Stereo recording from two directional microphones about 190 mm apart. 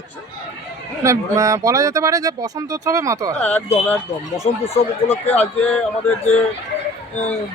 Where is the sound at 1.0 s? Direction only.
15° right (ahead or behind).